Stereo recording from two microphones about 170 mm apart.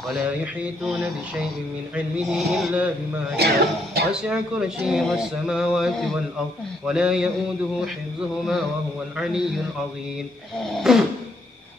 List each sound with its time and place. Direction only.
0.1 s a man's voice: centre (ahead or behind)
2.1 s a man's voice: centre (ahead or behind)
3.3 s speech: 70° right (ahead or behind)
4.1 s a man's voice: 5° right (ahead or behind)
10.6 s a man's voice: centre (ahead or behind)